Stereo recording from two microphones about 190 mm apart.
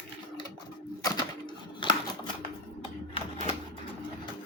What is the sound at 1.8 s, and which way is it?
Typewriter, 25° left (ahead or behind).